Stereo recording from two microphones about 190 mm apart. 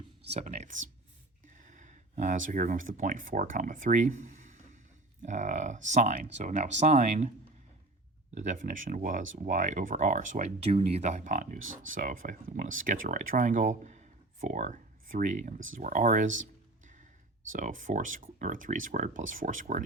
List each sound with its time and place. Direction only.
0.3 s speech: 35° right (ahead or behind)
8.4 s speech: 40° right (ahead or behind)
11.6 s speech: 90° right
11.9 s speech: 45° right (ahead or behind)
17.5 s speech: 45° right (ahead or behind)